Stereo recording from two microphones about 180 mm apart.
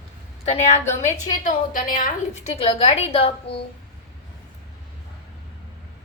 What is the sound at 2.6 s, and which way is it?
Speech, 30° left (ahead or behind).